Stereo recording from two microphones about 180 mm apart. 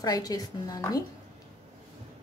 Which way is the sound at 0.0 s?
20° left (ahead or behind).